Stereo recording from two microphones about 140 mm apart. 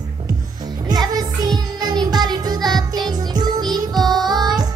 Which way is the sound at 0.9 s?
30° right (ahead or behind).